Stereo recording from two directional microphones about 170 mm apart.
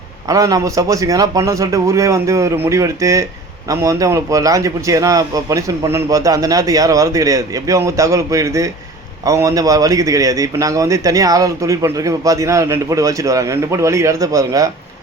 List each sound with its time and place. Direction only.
0.3 s a man's voice: 20° right (ahead or behind)